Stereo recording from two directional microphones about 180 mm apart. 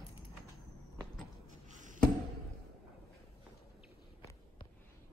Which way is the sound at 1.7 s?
45° right (ahead or behind).